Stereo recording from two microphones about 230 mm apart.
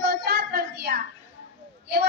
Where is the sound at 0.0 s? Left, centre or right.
Right.